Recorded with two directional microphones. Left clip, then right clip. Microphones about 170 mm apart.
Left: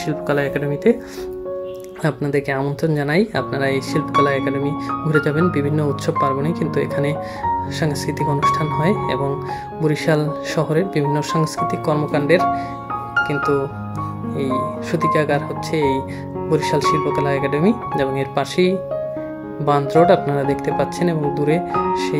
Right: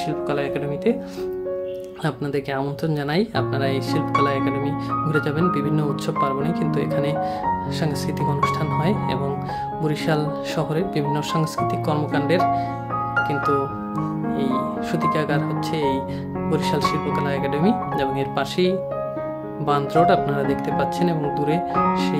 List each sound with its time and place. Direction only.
0.3 s speech: 25° left (ahead or behind)
2.0 s speech: 20° left (ahead or behind)
8.5 s speech: 20° left (ahead or behind)